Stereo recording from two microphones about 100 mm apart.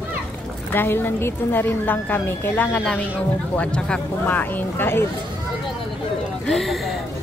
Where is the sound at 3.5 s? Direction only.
10° left (ahead or behind).